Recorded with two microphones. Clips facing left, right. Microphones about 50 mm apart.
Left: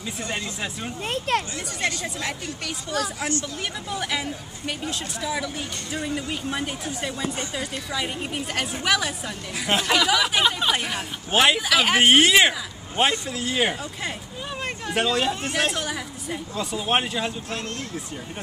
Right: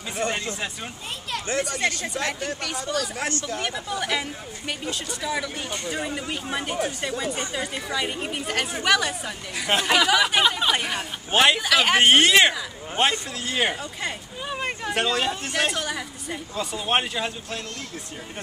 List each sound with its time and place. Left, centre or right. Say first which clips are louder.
1.0 s speech: left 9 dB; left
1.9 s speech: right 2 dB; right
3.6 s speech: right 1 dB; centre